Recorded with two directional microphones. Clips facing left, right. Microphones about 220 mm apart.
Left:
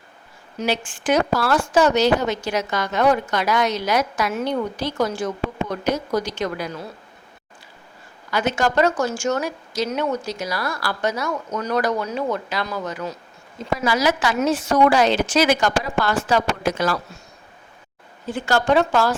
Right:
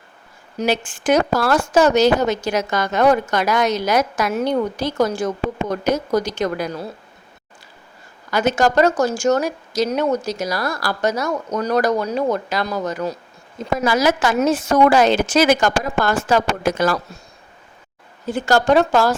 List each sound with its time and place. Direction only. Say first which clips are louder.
0.6 s a woman's voice: right 3 dB; 45° right (ahead or behind)
8.3 s a woman's voice: right 4 dB; 45° right (ahead or behind)
18.3 s speech: right 3 dB; 40° right (ahead or behind)